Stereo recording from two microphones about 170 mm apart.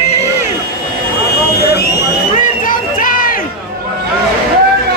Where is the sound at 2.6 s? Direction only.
55° left (ahead or behind).